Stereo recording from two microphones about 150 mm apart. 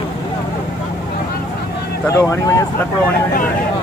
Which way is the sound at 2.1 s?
20° left (ahead or behind).